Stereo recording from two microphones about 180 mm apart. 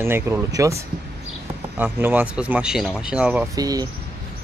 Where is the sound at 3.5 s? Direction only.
20° right (ahead or behind).